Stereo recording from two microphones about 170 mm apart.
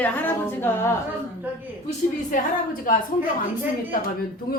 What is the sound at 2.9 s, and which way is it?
Speech, 55° left (ahead or behind).